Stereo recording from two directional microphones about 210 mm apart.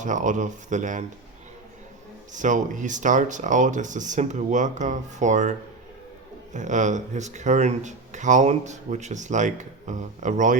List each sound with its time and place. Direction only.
0.0 s speech: 35° right (ahead or behind)
2.3 s speech: 35° right (ahead or behind)